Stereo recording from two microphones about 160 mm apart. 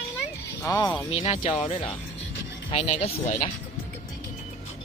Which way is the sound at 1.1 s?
40° left (ahead or behind).